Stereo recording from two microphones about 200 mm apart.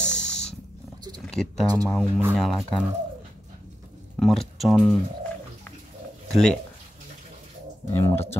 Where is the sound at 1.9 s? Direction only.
Centre (ahead or behind).